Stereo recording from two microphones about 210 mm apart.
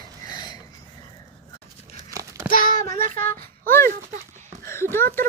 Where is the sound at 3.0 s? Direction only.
40° right (ahead or behind).